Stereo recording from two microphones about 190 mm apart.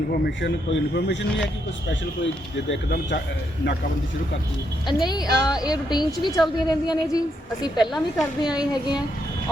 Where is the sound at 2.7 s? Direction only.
60° left (ahead or behind).